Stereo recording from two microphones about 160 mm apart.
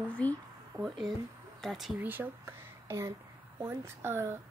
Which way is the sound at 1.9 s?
10° right (ahead or behind).